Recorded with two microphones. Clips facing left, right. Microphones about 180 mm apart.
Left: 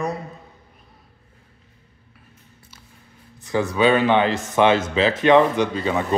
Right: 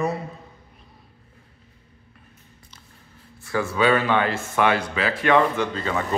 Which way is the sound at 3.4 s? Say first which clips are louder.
Left 3 dB; 20° left (ahead or behind).